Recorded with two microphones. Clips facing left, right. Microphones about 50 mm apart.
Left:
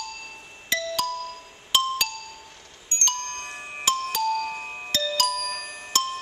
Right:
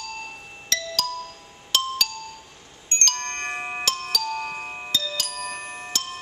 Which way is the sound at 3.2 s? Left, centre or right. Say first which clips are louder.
Right 5 dB; right.